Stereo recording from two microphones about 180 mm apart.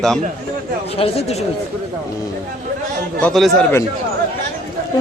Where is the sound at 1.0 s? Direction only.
35° left (ahead or behind).